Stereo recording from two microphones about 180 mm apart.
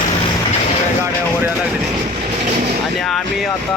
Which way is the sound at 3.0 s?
Centre (ahead or behind).